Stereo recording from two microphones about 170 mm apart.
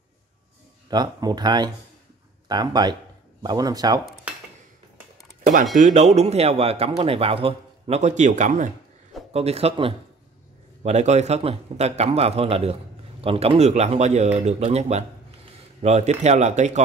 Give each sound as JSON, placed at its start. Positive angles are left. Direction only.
{"t": 0.8, "sound": "speech", "side_deg": -25}
{"t": 5.8, "sound": "a man's voice", "side_deg": -45}
{"t": 9.3, "sound": "a man's voice", "side_deg": -35}